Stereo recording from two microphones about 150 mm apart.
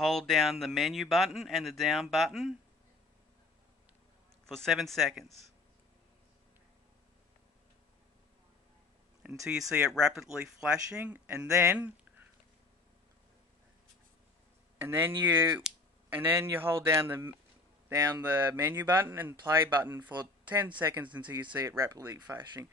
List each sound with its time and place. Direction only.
0.0 s speech: centre (ahead or behind)
4.5 s speech: centre (ahead or behind)
9.4 s speech: 5° right (ahead or behind)
14.8 s speech: 15° right (ahead or behind)